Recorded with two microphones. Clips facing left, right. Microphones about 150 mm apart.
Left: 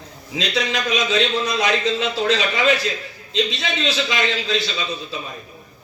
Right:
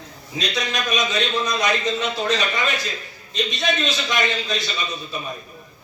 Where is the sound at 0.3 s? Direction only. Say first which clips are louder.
Left 3 dB; 90° left.